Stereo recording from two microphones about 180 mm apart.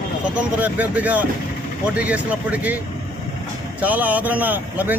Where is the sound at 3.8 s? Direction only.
10° right (ahead or behind).